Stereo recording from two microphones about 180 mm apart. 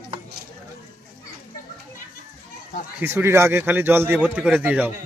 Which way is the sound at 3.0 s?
15° right (ahead or behind).